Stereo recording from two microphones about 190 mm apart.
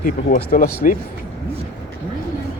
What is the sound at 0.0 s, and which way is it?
Speech, 50° left (ahead or behind).